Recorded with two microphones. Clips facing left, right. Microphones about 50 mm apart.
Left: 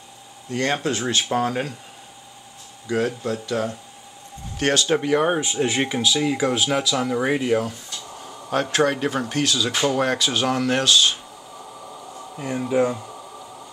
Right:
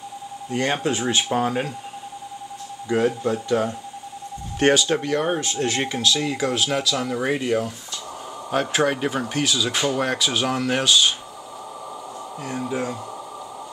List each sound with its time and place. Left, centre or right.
0.5 s speech: centre
2.9 s speech: centre
4.8 s speech: centre
12.4 s speech: centre